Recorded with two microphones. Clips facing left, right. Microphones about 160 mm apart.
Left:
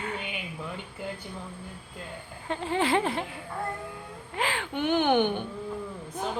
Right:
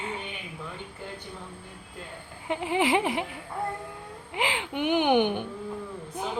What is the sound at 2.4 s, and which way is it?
Speech, 15° right (ahead or behind).